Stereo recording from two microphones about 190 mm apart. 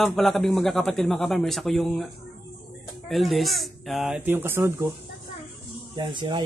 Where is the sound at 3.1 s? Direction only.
Centre (ahead or behind).